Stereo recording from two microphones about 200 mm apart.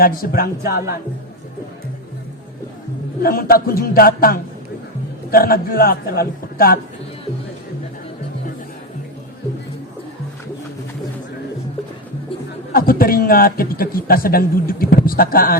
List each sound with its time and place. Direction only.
0.0 s a man's voice: 45° left (ahead or behind)
3.2 s a man's voice: 45° left (ahead or behind)
12.7 s a man's voice: 45° left (ahead or behind)